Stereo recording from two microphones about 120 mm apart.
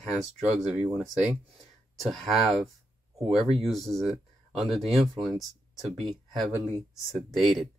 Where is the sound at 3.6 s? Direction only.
Centre (ahead or behind).